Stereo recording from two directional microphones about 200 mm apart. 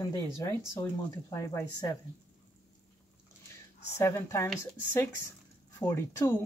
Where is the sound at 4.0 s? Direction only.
15° left (ahead or behind).